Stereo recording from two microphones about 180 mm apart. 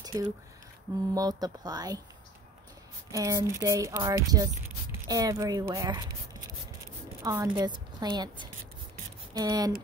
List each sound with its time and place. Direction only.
0.1 s speech: 20° right (ahead or behind)
3.1 s speech: 20° right (ahead or behind)
7.2 s speech: 15° right (ahead or behind)